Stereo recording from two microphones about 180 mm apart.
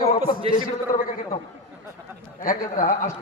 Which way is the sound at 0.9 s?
45° left (ahead or behind).